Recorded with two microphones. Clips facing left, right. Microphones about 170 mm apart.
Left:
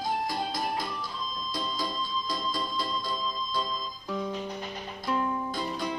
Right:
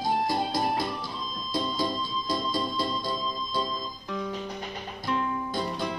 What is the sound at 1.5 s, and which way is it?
Organ, 25° right (ahead or behind).